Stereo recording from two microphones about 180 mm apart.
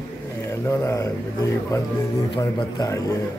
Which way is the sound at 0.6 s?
15° left (ahead or behind).